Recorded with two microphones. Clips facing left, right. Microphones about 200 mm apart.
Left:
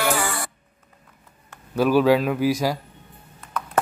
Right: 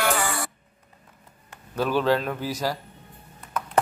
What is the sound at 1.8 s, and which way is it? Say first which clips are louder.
Speech: left 5 dB; 10° left (ahead or behind).